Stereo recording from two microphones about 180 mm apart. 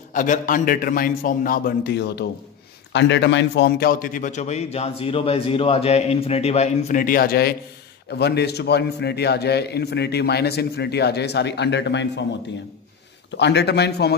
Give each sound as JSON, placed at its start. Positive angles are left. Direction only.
{"t": 0.1, "sound": "a man's voice", "side_deg": 45}
{"t": 13.4, "sound": "a man's voice", "side_deg": 70}